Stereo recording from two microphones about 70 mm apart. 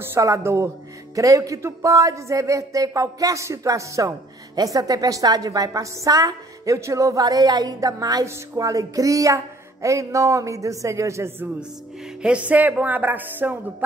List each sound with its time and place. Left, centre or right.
0.4 s speech: right
1.1 s speech: right
4.6 s a woman's voice: right
12.2 s speech: centre